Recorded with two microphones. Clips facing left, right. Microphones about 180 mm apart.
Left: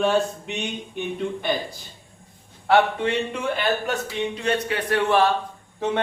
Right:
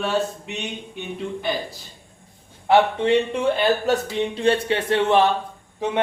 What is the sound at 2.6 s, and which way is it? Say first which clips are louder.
Speech: right 2 dB; 20° right (ahead or behind).